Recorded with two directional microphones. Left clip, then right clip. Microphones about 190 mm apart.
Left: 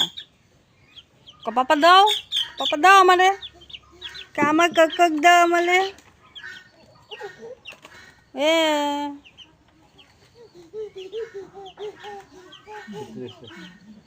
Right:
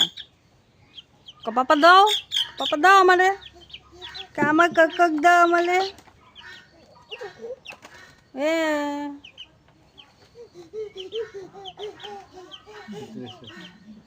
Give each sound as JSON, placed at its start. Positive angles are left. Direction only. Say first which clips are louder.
{"t": 1.4, "sound": "speech", "louder": "even", "side_deg": -15}
{"t": 8.3, "sound": "speech", "louder": "left 4 dB", "side_deg": -5}